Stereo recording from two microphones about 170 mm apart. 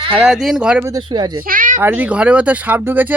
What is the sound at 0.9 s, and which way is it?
Speech, 25° right (ahead or behind).